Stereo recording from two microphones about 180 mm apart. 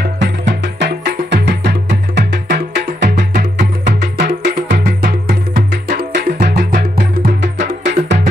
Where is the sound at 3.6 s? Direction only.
70° right (ahead or behind).